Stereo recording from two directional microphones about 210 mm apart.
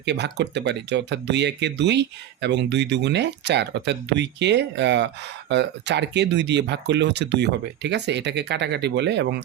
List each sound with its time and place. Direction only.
0.0 s speech: 55° right (ahead or behind)